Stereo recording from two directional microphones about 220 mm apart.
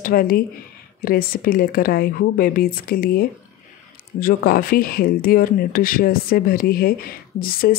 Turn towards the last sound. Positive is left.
turn(degrees=40)  # may be behind; listen again after turning